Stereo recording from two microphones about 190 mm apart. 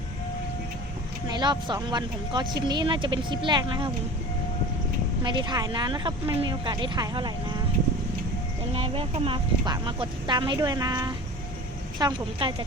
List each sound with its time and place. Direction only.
1.3 s speech: 20° right (ahead or behind)
5.2 s speech: 25° right (ahead or behind)
8.7 s speech: 30° right (ahead or behind)